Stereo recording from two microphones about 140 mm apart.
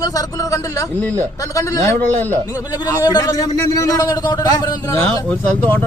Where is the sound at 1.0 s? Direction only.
10° left (ahead or behind).